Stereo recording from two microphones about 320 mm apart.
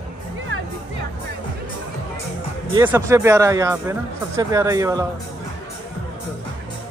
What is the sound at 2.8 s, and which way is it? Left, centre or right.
Speech, centre.